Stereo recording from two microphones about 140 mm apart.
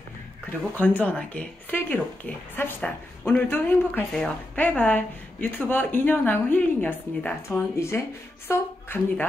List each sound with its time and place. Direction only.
0.7 s speech: 10° left (ahead or behind)